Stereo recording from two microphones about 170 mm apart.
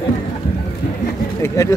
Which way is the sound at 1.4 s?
15° left (ahead or behind).